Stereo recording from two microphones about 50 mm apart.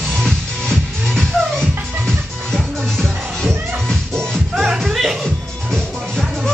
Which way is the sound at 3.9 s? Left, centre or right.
Centre.